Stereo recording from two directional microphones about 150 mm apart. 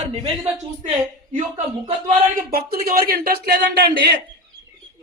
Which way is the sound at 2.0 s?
75° right (ahead or behind).